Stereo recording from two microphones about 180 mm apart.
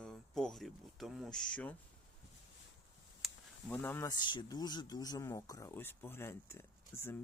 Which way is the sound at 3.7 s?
10° left (ahead or behind).